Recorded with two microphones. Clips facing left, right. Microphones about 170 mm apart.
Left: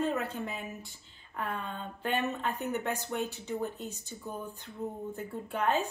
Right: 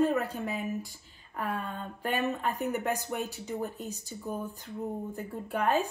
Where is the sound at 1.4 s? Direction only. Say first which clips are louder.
Right 2 dB; 10° right (ahead or behind).